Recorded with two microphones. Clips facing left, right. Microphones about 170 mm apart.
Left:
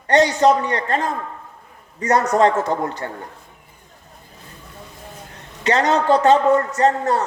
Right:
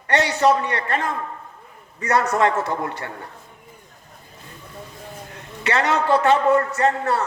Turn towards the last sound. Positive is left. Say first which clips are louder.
# left 3 dB
turn(degrees=35)  # may be behind; listen again after turning